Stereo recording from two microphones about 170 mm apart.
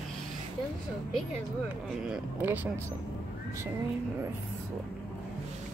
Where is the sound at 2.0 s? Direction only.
5° right (ahead or behind).